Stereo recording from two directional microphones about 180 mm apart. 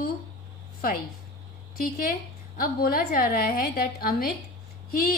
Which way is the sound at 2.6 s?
55° left (ahead or behind).